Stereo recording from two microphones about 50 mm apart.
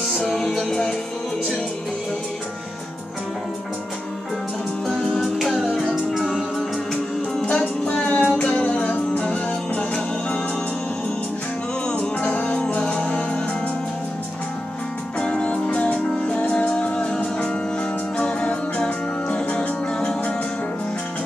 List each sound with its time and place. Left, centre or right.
0.0 s music: centre
4.8 s music: centre
7.2 s music: centre
8.0 s music: left
12.2 s music: left
15.1 s music: centre
20.0 s music: centre